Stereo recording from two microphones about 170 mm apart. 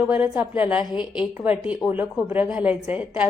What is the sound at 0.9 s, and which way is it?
Speech, 25° left (ahead or behind).